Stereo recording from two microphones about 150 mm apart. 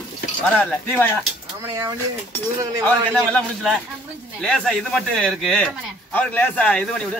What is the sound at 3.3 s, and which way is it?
A man's voice, 5° left (ahead or behind).